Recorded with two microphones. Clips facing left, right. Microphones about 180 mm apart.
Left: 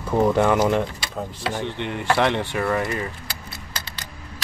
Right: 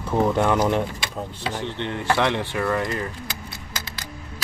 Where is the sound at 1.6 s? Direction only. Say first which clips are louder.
Right 1 dB; 15° left (ahead or behind).